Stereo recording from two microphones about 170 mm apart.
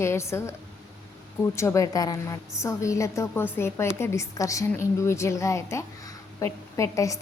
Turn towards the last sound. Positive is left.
turn(degrees=20)  # may be behind; listen again after turning